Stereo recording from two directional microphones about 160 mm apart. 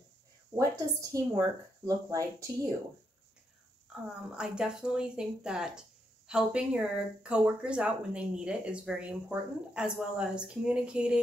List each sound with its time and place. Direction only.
0.6 s speech: 20° right (ahead or behind)
3.9 s a sound: 5° right (ahead or behind)
4.4 s speech: 5° right (ahead or behind)